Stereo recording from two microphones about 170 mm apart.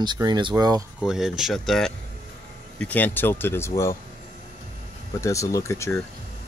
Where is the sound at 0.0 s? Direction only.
25° right (ahead or behind).